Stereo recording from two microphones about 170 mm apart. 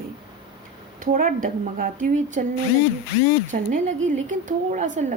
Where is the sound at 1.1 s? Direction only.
50° right (ahead or behind).